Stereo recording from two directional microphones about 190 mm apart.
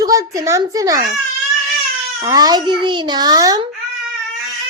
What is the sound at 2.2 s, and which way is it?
A child's voice, 20° right (ahead or behind).